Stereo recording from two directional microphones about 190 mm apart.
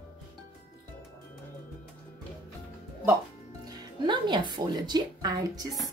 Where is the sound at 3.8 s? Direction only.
25° right (ahead or behind).